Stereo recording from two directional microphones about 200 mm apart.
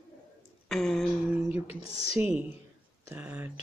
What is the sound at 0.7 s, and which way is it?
Speech, 5° left (ahead or behind).